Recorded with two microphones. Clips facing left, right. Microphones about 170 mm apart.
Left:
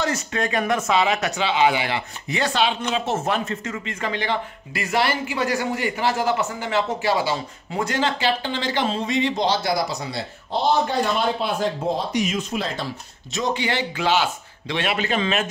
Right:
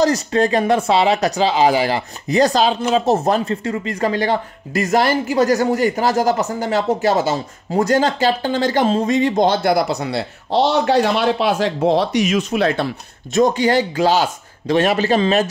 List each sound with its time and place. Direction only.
0.0 s speech: 35° right (ahead or behind); by 12.8 s 65° right (ahead or behind)
13.3 s speech: 45° right (ahead or behind)